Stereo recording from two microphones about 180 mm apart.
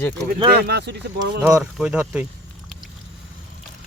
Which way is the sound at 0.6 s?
65° right (ahead or behind).